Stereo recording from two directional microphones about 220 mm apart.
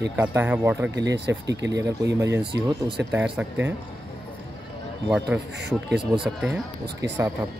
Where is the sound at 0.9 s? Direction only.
55° right (ahead or behind).